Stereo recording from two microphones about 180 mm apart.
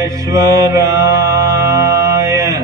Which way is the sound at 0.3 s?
20° right (ahead or behind).